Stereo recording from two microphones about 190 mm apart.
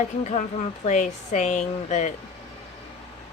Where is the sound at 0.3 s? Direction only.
40° left (ahead or behind).